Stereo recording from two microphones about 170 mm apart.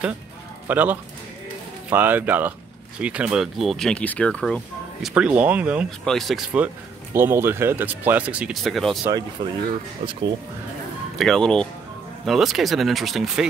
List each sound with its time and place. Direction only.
0.7 s speech: 10° right (ahead or behind)
5.0 s speech: 5° right (ahead or behind)
5.9 s speech: centre (ahead or behind)
11.1 s speech: centre (ahead or behind)